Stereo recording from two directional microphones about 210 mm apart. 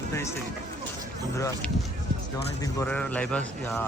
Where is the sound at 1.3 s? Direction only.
15° left (ahead or behind).